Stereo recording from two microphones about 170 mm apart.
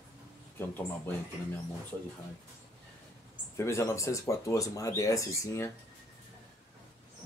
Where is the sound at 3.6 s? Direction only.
15° left (ahead or behind).